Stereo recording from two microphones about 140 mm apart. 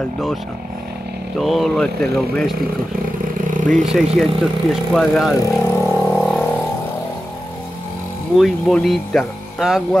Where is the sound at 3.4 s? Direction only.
70° right (ahead or behind).